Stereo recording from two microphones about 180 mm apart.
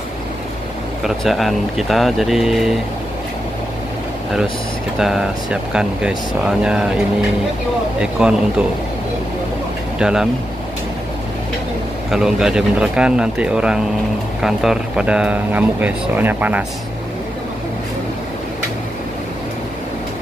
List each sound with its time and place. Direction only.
1.0 s speech: centre (ahead or behind)
4.9 s speech: 5° right (ahead or behind)
8.0 s speech: 5° right (ahead or behind)
9.9 s speech: 5° right (ahead or behind)
12.1 s speech: 5° right (ahead or behind)